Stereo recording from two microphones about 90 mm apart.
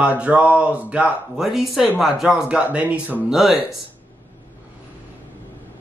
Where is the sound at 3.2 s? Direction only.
5° right (ahead or behind).